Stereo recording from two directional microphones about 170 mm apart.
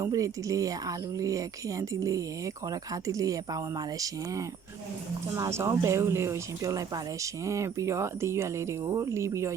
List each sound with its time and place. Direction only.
0.0 s speech: 20° right (ahead or behind)